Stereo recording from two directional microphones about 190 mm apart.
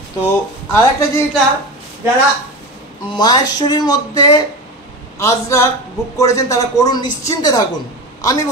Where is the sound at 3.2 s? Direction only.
20° left (ahead or behind).